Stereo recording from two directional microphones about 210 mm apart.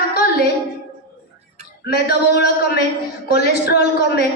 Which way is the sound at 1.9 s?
50° left (ahead or behind).